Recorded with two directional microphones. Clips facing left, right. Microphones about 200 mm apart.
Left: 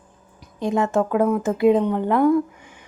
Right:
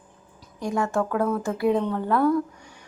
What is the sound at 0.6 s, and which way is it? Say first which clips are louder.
Speech: left 4 dB; 20° left (ahead or behind).